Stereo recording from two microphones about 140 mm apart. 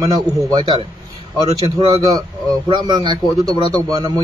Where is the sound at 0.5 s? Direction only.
35° right (ahead or behind).